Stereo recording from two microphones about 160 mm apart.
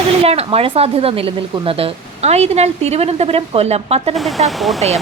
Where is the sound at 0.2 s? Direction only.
40° right (ahead or behind).